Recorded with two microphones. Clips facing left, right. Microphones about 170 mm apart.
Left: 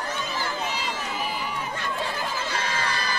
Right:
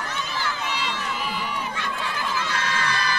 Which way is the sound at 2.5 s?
60° right (ahead or behind).